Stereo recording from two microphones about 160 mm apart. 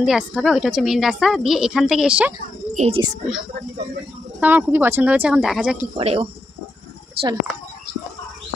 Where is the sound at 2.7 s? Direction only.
40° right (ahead or behind).